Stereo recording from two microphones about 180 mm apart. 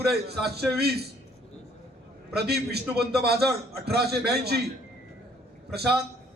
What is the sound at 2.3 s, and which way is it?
A man's voice, 60° right (ahead or behind).